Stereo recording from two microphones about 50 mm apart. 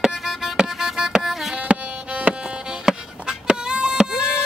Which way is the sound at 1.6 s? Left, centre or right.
Right.